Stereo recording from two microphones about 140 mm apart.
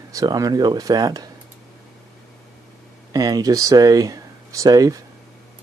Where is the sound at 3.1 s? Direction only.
25° right (ahead or behind).